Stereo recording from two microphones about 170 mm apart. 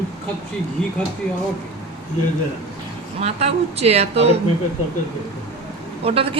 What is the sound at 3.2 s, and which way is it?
A man's voice, 40° right (ahead or behind).